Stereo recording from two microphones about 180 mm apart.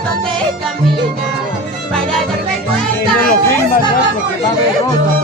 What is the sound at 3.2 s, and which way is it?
Music, 50° left (ahead or behind).